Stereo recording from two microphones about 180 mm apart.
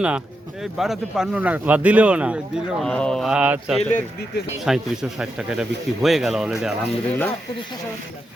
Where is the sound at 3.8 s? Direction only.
40° left (ahead or behind).